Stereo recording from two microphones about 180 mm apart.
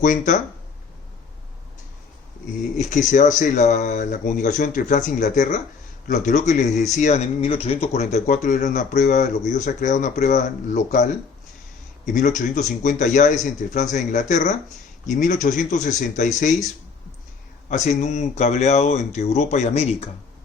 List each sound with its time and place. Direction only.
0.0 s speech: 45° left (ahead or behind)
2.9 s speech: 45° left (ahead or behind)
12.1 s speech: 45° left (ahead or behind)
17.7 s speech: 40° left (ahead or behind)